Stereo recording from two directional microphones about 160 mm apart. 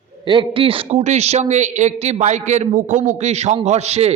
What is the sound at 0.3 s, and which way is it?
A man's voice, 30° right (ahead or behind).